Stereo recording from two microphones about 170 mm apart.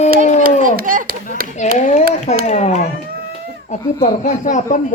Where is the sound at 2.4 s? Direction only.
40° left (ahead or behind).